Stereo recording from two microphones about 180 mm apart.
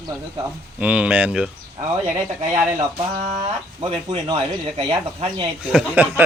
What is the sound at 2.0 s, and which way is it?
Speech, 40° right (ahead or behind).